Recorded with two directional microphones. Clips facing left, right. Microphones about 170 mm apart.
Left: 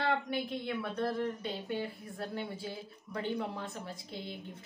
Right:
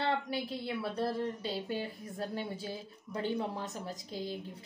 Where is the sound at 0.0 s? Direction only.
35° right (ahead or behind).